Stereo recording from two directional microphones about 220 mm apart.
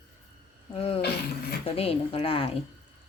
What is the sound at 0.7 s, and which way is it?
Speech, 25° left (ahead or behind).